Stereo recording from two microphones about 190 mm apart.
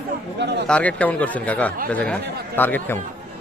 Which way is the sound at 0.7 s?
5° left (ahead or behind).